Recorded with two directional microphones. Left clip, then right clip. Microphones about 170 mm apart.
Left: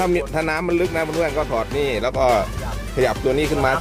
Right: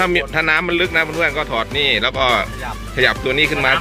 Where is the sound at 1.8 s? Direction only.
45° right (ahead or behind).